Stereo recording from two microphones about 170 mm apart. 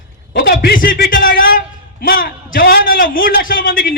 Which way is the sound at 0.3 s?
60° left (ahead or behind).